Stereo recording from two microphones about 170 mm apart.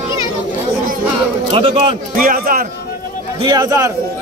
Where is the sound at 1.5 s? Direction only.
35° right (ahead or behind).